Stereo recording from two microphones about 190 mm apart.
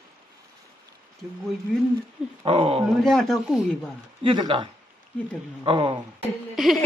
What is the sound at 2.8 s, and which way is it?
Speech, centre (ahead or behind).